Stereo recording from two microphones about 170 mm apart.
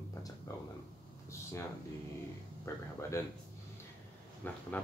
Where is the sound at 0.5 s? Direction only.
15° left (ahead or behind).